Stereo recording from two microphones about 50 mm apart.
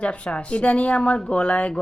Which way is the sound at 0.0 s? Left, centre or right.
Left.